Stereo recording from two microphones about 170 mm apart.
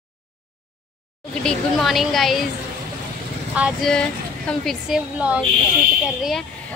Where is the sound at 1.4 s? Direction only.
Centre (ahead or behind).